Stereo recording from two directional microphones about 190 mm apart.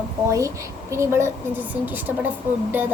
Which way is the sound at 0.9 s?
15° right (ahead or behind).